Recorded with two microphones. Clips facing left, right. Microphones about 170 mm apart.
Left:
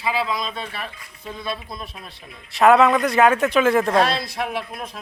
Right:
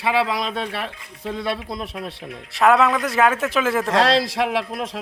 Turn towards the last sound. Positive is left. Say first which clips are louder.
# right 6 dB
turn(degrees=-90)